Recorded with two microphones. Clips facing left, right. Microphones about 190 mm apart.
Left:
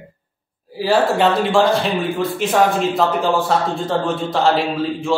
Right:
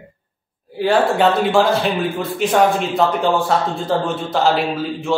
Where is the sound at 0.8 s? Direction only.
Centre (ahead or behind).